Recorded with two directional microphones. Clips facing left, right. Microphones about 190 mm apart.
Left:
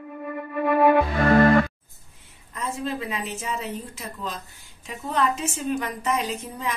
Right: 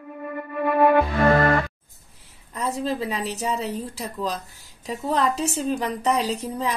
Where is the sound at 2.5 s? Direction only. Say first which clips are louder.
Right 3 dB; 35° right (ahead or behind).